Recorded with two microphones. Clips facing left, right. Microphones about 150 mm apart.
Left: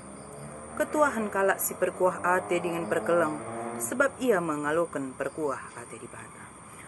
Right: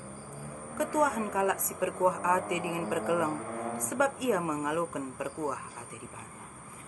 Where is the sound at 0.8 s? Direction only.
15° right (ahead or behind).